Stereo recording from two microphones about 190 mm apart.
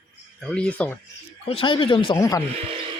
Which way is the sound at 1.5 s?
25° left (ahead or behind).